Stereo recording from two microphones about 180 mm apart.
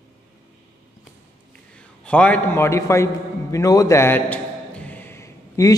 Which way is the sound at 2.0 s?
5° left (ahead or behind).